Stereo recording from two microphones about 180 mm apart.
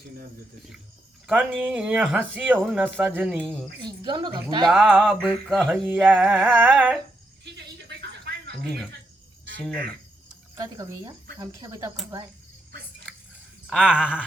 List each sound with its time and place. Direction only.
1.3 s speech: 5° right (ahead or behind)
3.8 s a woman's voice: 25° right (ahead or behind)
4.7 s speech: 5° right (ahead or behind)
6.4 s speech: 10° right (ahead or behind)
7.4 s a sound: 70° right (ahead or behind)
10.5 s speech: 20° right (ahead or behind)
13.7 s speech: centre (ahead or behind)